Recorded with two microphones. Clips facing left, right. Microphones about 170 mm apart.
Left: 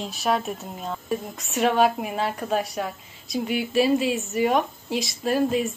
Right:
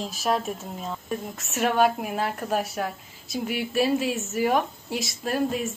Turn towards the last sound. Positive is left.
turn(degrees=0)  # may be behind; listen again after turning